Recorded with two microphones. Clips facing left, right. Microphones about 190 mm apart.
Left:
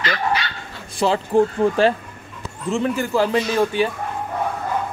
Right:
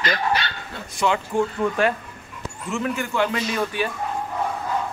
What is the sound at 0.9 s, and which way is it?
A man's voice, 35° left (ahead or behind).